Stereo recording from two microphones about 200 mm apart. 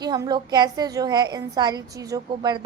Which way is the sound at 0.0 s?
20° right (ahead or behind).